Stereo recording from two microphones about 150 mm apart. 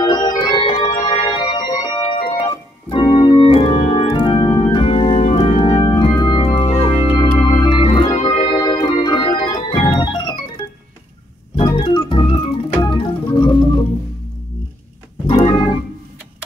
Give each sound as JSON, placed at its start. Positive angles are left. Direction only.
{"t": 0.0, "sound": "organ", "side_deg": 30}
{"t": 11.5, "sound": "organ", "side_deg": 35}
{"t": 15.2, "sound": "organ", "side_deg": 35}